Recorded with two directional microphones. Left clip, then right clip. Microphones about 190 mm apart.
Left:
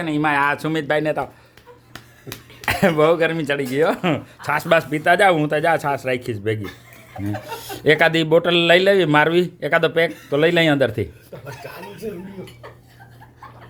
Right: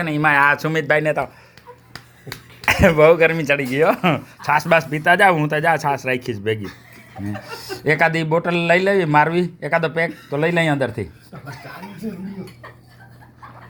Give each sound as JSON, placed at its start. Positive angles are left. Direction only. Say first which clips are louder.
{"t": 0.0, "sound": "speech", "louder": "right 3 dB", "side_deg": 0}
{"t": 2.6, "sound": "speech", "louder": "right 4 dB", "side_deg": 5}
{"t": 7.8, "sound": "speech", "louder": "left 2 dB", "side_deg": 25}